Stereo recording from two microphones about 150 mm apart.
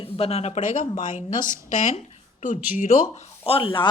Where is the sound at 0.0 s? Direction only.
45° left (ahead or behind); by 3.0 s 60° left (ahead or behind).